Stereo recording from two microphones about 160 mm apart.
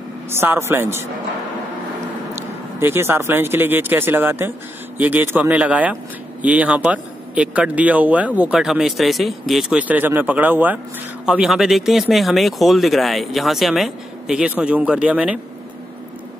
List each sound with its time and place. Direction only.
0.3 s speech: 15° right (ahead or behind)
2.8 s speech: 15° right (ahead or behind)